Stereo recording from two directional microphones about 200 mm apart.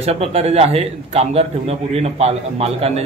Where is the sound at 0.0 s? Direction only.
30° right (ahead or behind).